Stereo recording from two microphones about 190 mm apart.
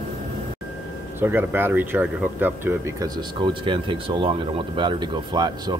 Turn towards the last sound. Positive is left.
turn(degrees=-20)  # may be behind; listen again after turning